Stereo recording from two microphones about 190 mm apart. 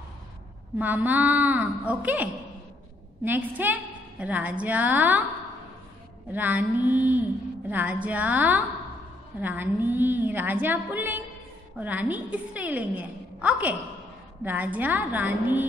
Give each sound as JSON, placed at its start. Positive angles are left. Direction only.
{"t": 0.7, "sound": "a woman's voice", "side_deg": -10}
{"t": 3.3, "sound": "a woman's voice", "side_deg": -10}
{"t": 6.3, "sound": "a woman's voice", "side_deg": -10}